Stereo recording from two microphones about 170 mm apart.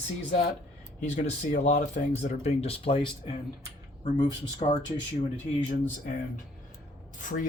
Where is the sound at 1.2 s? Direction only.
45° left (ahead or behind); by 4.6 s 25° left (ahead or behind).